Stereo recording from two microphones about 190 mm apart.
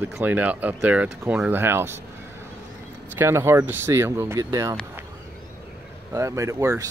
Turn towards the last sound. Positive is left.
turn(degrees=-15)  # may be behind; listen again after turning